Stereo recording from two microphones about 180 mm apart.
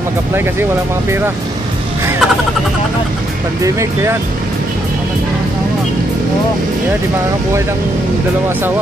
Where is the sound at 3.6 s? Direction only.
15° right (ahead or behind).